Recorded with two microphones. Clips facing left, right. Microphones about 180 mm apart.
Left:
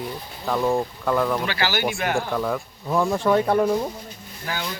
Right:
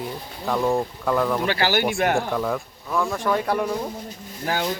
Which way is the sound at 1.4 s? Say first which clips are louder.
Right 3 dB; 50° right (ahead or behind).